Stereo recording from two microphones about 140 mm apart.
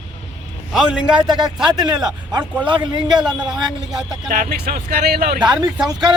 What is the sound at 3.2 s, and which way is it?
Speech, 5° right (ahead or behind).